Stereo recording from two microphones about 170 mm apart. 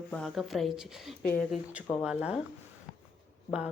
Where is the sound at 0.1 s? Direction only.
5° left (ahead or behind).